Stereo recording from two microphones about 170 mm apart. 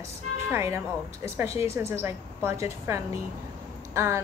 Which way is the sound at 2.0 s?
15° right (ahead or behind).